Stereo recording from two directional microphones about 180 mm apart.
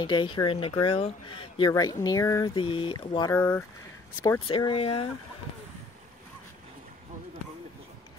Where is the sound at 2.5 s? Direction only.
30° left (ahead or behind).